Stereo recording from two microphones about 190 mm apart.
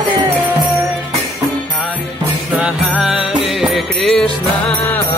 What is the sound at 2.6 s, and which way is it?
Music, 5° right (ahead or behind).